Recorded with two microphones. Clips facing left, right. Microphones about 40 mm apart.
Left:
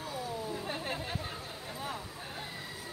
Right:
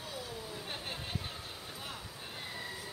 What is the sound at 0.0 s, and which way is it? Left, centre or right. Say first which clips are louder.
Chatter: left 5 dB; left.